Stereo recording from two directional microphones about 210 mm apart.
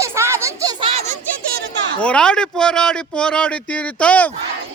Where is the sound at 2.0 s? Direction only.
5° left (ahead or behind).